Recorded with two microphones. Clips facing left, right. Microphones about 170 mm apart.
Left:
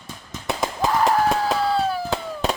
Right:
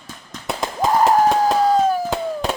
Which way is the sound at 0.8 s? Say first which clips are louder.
Right 4 dB; 40° right (ahead or behind).